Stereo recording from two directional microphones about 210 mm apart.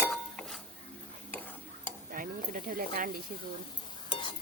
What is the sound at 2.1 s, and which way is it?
Speech, 40° right (ahead or behind).